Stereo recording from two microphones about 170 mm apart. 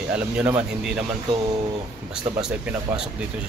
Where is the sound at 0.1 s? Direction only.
5° right (ahead or behind).